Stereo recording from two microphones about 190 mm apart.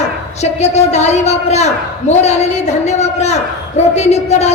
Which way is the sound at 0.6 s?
35° left (ahead or behind).